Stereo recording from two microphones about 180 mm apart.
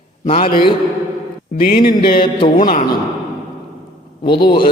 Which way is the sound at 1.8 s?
55° left (ahead or behind).